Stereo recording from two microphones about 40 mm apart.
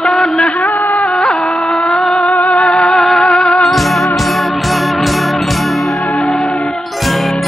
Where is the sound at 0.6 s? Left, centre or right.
Left.